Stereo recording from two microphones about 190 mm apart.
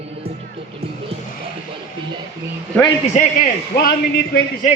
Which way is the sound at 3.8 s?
50° left (ahead or behind).